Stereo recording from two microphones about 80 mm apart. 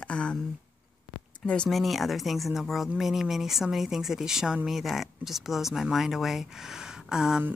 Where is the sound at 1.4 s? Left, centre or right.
Centre.